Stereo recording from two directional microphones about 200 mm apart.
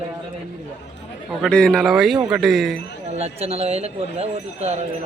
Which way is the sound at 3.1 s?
30° right (ahead or behind).